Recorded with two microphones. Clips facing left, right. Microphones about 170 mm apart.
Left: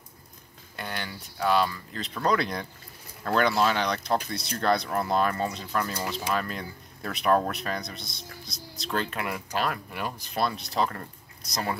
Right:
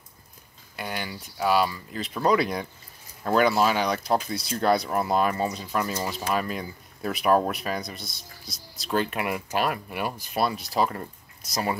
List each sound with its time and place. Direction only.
0.7 s speech: 10° right (ahead or behind)
8.0 s speech: 20° left (ahead or behind)
8.9 s speech: 15° right (ahead or behind)